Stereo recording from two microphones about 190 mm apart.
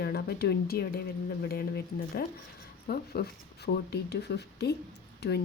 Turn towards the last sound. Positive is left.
turn(degrees=60)  # may be behind; listen again after turning